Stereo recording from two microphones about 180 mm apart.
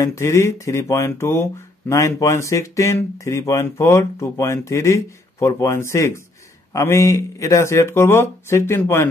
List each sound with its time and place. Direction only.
0.0 s speech: 15° left (ahead or behind)